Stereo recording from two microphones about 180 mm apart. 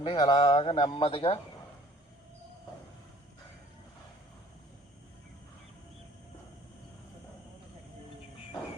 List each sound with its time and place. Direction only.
0.0 s a man's voice: 25° left (ahead or behind)